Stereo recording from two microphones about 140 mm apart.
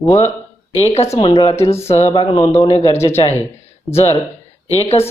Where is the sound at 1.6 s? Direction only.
20° left (ahead or behind).